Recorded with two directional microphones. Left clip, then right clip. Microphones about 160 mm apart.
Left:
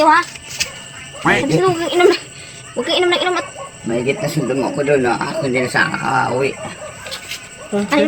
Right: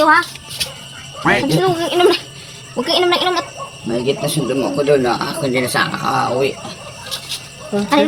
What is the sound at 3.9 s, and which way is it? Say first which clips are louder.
Speech: even; 25° left (ahead or behind).